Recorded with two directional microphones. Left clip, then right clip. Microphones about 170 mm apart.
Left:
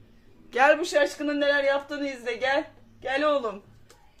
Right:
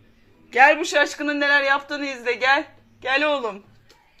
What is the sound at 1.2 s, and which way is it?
Speech, 55° right (ahead or behind).